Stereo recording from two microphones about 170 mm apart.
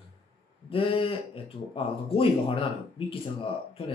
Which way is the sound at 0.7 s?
30° left (ahead or behind).